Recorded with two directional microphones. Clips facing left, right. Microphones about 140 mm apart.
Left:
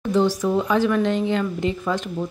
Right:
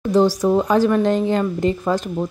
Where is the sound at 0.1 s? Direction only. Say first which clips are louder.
Right 4 dB; 35° right (ahead or behind).